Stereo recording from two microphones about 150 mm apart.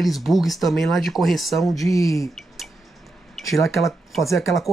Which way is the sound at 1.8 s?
20° left (ahead or behind).